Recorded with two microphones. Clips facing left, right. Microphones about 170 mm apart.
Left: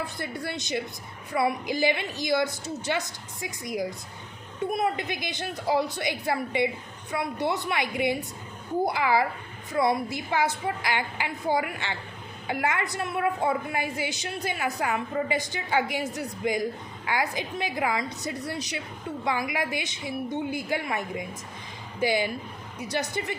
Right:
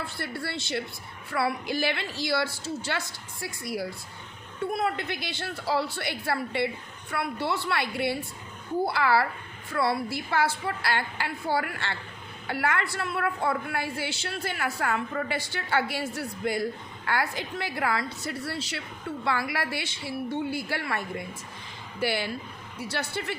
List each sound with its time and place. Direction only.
0.0 s a woman's voice: 15° left (ahead or behind)